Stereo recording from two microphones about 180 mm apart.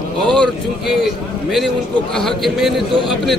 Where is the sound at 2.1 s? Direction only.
Centre (ahead or behind).